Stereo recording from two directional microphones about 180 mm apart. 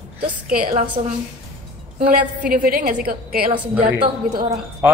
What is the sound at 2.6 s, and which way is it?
Speech, 50° right (ahead or behind).